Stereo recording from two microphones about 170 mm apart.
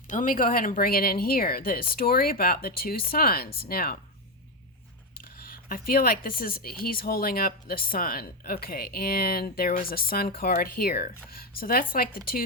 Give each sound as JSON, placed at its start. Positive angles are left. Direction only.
{"t": 0.1, "sound": "speech", "side_deg": 50}
{"t": 5.4, "sound": "speech", "side_deg": 55}